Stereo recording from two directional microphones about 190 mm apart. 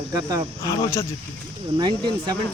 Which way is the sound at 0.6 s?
15° left (ahead or behind).